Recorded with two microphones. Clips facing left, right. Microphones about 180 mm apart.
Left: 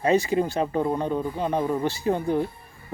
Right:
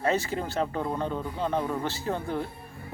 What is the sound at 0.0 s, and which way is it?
Speech, 15° left (ahead or behind).